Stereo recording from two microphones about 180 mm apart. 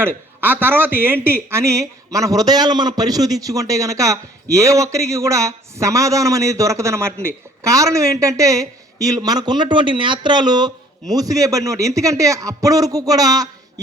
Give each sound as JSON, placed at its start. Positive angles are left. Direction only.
{"t": 0.0, "sound": "speech", "side_deg": -10}